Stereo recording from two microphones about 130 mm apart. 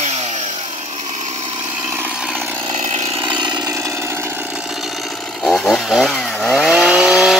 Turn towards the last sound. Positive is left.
turn(degrees=-5)  # may be behind; listen again after turning